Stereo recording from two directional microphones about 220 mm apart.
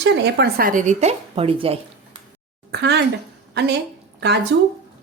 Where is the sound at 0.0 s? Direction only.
50° right (ahead or behind); by 1.8 s 25° right (ahead or behind).